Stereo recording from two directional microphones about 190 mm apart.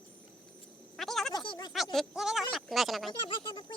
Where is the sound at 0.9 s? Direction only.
Centre (ahead or behind).